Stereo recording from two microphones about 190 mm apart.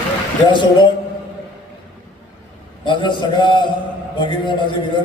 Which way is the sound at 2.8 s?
25° left (ahead or behind).